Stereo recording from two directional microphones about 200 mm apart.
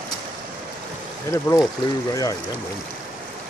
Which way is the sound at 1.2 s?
15° left (ahead or behind).